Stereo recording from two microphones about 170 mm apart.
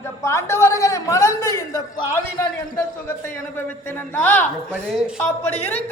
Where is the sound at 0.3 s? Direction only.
15° left (ahead or behind).